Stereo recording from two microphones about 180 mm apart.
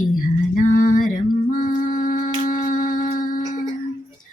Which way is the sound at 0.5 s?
45° left (ahead or behind).